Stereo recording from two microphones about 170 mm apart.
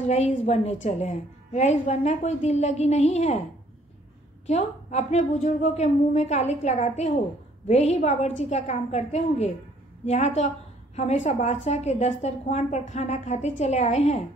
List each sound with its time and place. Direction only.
0.1 s a woman's voice: 40° left (ahead or behind)
4.5 s a woman's voice: 40° left (ahead or behind)